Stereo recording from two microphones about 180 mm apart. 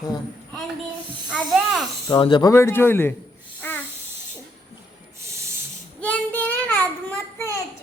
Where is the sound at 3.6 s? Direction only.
10° left (ahead or behind).